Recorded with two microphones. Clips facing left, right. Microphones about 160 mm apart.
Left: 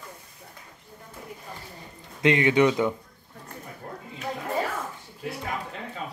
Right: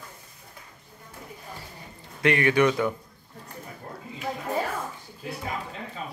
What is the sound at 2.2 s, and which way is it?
Speech, 20° left (ahead or behind).